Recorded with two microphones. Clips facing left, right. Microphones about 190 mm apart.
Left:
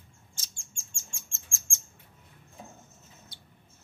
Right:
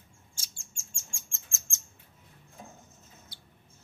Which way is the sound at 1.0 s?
20° right (ahead or behind).